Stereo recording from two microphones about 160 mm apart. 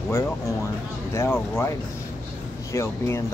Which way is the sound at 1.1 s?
15° left (ahead or behind).